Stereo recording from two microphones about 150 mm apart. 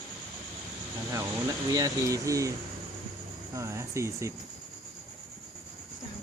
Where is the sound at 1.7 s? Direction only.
20° right (ahead or behind).